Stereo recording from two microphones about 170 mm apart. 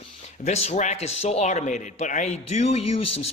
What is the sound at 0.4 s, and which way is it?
Speech, 40° left (ahead or behind).